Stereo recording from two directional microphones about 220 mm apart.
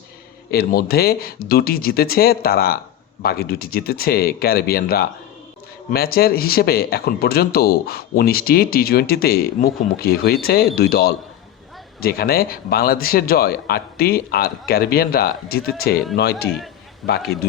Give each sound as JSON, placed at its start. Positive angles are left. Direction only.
{"t": 0.5, "sound": "speech", "side_deg": 45}
{"t": 17.0, "sound": "a man's voice", "side_deg": 0}